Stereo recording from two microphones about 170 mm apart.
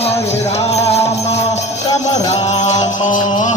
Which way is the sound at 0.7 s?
40° left (ahead or behind).